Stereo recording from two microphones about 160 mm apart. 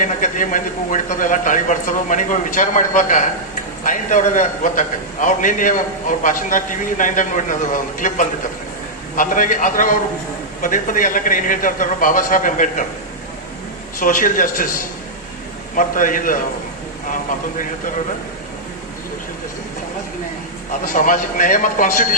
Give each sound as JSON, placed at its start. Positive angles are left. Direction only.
{"t": 0.0, "sound": "a man's voice", "side_deg": 55}
{"t": 14.0, "sound": "a man's voice", "side_deg": 60}
{"t": 20.8, "sound": "a man's voice", "side_deg": 55}